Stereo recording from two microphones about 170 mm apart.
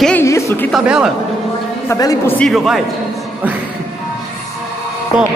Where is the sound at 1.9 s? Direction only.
20° left (ahead or behind).